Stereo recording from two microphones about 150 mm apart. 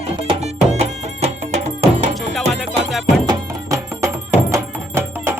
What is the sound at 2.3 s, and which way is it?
Music, centre (ahead or behind).